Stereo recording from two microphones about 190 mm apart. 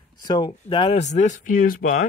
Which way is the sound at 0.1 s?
20° left (ahead or behind).